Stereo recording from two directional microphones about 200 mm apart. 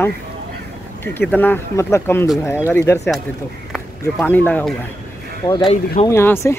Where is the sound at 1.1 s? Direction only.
10° left (ahead or behind).